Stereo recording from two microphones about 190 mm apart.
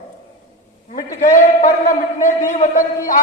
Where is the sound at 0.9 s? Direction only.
40° left (ahead or behind).